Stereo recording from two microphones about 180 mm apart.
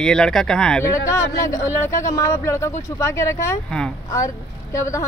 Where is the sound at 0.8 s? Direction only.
15° left (ahead or behind).